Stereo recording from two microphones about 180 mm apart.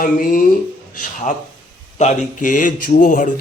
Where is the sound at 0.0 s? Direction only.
50° left (ahead or behind).